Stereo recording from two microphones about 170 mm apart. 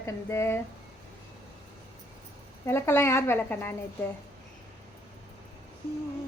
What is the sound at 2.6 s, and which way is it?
A woman's voice, 15° left (ahead or behind).